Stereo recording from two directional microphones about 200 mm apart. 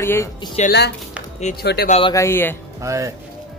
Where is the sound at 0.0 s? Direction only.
15° left (ahead or behind).